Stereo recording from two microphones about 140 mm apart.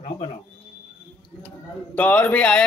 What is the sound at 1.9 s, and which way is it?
Speech, 10° left (ahead or behind).